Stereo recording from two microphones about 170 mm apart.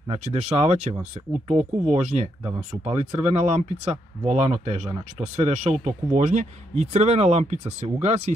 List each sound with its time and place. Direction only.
0.1 s speech: 40° right (ahead or behind)